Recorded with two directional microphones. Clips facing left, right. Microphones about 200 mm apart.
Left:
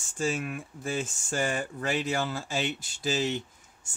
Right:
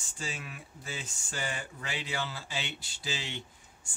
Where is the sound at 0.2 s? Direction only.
50° left (ahead or behind).